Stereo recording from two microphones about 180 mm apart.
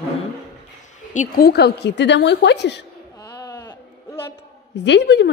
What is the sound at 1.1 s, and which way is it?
A woman's voice, 50° left (ahead or behind).